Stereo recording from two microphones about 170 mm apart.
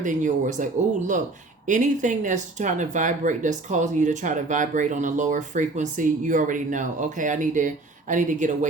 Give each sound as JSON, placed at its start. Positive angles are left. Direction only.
{"t": 0.0, "sound": "speech", "side_deg": -50}